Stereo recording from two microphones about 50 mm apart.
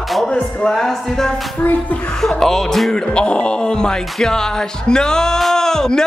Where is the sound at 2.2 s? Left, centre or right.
Centre.